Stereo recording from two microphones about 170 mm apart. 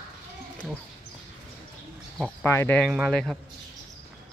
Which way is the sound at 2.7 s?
Centre (ahead or behind).